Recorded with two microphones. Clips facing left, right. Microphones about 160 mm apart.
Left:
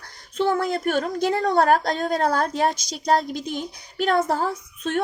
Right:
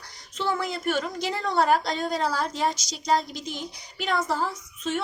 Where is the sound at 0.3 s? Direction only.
50° left (ahead or behind).